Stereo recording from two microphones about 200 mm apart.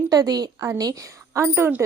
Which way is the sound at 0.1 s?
20° right (ahead or behind).